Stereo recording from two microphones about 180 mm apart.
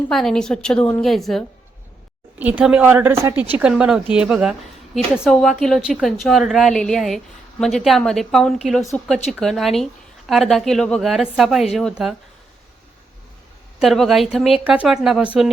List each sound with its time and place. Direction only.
0.1 s a woman's voice: 5° left (ahead or behind)
13.7 s a woman's voice: centre (ahead or behind)